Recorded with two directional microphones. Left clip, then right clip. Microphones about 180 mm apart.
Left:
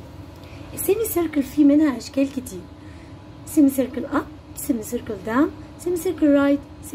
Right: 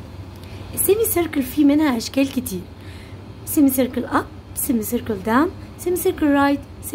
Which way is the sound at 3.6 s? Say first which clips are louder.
Right 1 dB; 35° right (ahead or behind).